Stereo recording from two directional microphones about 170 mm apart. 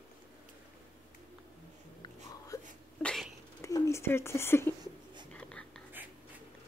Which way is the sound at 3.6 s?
15° left (ahead or behind).